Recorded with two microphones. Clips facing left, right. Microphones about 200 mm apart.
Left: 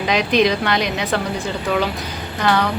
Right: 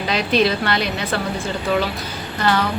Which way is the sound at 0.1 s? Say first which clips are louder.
Left 2 dB; 15° left (ahead or behind).